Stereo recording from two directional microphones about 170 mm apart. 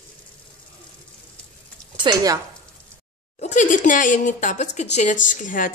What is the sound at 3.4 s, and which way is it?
A woman's voice, 45° left (ahead or behind).